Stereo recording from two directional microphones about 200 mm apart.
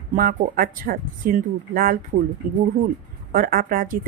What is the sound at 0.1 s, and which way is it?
A woman's voice, 45° right (ahead or behind).